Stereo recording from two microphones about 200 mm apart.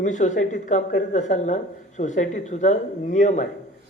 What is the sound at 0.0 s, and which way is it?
Speech, 40° left (ahead or behind).